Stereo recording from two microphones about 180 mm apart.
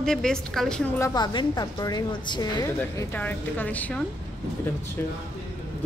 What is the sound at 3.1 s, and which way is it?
Speech, 10° left (ahead or behind).